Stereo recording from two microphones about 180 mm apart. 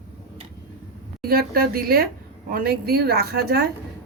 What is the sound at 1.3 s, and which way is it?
A woman's voice, 55° right (ahead or behind).